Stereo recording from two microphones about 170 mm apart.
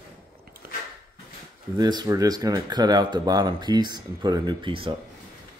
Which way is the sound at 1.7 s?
25° right (ahead or behind).